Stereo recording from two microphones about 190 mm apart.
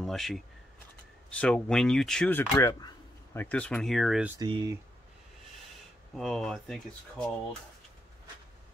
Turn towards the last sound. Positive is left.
turn(degrees=0)  # may be behind; listen again after turning